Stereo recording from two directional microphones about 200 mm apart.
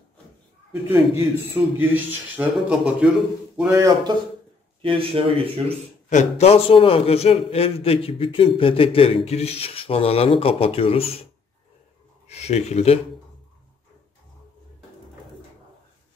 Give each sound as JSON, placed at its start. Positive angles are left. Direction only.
{"t": 0.8, "sound": "a man's voice", "side_deg": -10}
{"t": 3.5, "sound": "a man's voice", "side_deg": -15}
{"t": 4.8, "sound": "a man's voice", "side_deg": -30}
{"t": 6.0, "sound": "a man's voice", "side_deg": 35}
{"t": 12.3, "sound": "speech", "side_deg": 35}